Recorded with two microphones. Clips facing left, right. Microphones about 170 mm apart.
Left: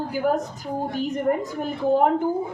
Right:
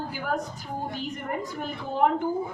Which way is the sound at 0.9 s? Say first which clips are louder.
Left 12 dB; 45° left (ahead or behind).